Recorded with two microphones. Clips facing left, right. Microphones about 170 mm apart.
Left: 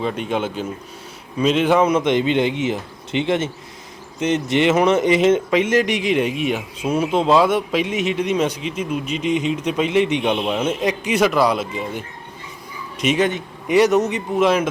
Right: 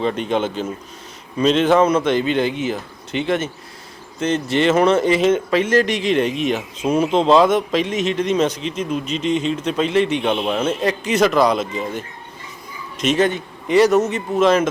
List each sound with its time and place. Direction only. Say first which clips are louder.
0.0 s a man's voice: right 2 dB; 5° left (ahead or behind)